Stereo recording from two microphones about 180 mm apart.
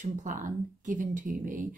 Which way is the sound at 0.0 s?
45° right (ahead or behind).